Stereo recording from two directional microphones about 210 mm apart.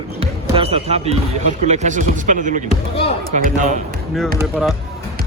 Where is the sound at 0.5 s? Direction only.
30° right (ahead or behind).